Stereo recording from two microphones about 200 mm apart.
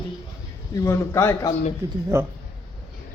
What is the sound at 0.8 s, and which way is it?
Speech, 15° left (ahead or behind).